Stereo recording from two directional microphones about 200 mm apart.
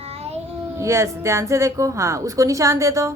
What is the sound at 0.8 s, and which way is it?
A woman's voice, 15° right (ahead or behind).